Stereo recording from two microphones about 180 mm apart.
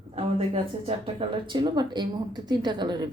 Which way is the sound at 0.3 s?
30° right (ahead or behind).